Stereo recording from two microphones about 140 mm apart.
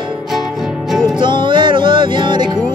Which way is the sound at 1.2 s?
35° right (ahead or behind).